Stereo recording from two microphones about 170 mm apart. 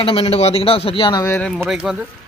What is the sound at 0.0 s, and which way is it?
A man's voice, 35° left (ahead or behind).